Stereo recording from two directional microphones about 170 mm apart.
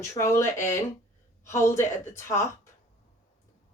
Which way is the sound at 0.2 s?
15° left (ahead or behind).